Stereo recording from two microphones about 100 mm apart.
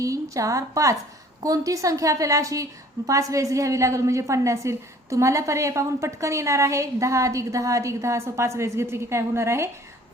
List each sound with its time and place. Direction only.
0.0 s a woman's voice: 35° right (ahead or behind)